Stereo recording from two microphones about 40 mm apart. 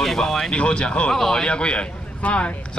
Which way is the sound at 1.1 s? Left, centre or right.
Centre.